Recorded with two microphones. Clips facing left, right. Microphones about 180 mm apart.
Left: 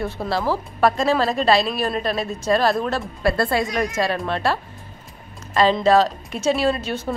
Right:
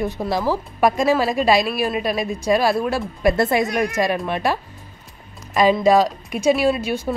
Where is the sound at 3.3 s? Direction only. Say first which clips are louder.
Right 2 dB; 20° right (ahead or behind).